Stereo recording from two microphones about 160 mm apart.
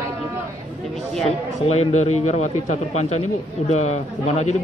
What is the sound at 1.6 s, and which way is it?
Speech, 40° left (ahead or behind).